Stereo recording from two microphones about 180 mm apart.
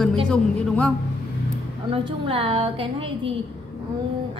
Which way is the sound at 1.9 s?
30° right (ahead or behind).